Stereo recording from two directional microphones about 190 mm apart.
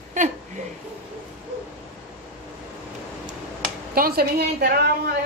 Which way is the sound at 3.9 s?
55° right (ahead or behind).